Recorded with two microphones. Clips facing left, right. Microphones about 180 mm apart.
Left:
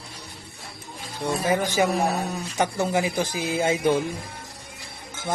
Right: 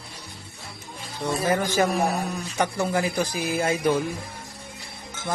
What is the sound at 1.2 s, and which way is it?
A man's voice, 15° left (ahead or behind).